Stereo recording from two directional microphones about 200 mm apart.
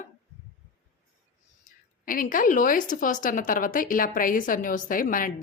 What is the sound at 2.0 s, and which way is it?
A woman's voice, 45° left (ahead or behind).